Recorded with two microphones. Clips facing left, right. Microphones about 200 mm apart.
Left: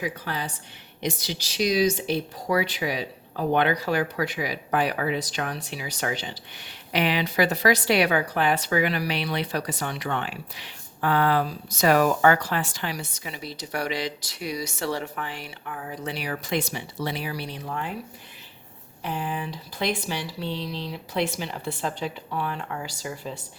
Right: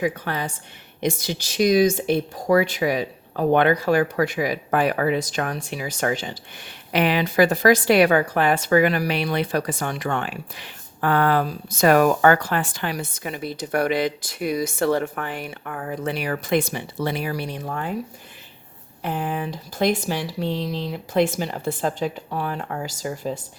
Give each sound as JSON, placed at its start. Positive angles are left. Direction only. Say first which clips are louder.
{"t": 0.0, "sound": "speech", "louder": "right 6 dB", "side_deg": -50}
{"t": 19.0, "sound": "speech", "louder": "right 4 dB", "side_deg": -50}